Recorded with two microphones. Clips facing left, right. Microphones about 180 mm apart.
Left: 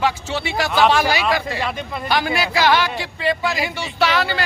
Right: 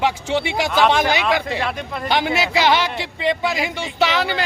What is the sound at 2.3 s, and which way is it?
Speech, 25° right (ahead or behind).